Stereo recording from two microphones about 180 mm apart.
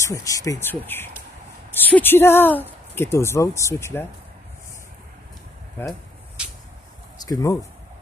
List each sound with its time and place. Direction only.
0.0 s speech: 20° left (ahead or behind)
7.2 s speech: 20° left (ahead or behind)